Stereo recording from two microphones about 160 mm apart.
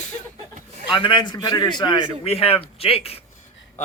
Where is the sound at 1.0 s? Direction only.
30° left (ahead or behind).